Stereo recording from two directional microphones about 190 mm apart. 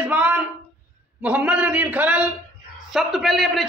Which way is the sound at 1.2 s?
5° right (ahead or behind).